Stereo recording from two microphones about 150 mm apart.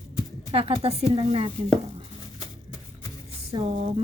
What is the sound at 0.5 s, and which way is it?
Speech, 40° right (ahead or behind).